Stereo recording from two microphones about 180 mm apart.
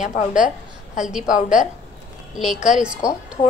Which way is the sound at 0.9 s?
5° right (ahead or behind).